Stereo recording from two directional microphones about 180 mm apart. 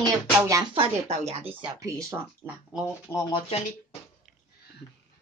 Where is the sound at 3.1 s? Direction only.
25° left (ahead or behind).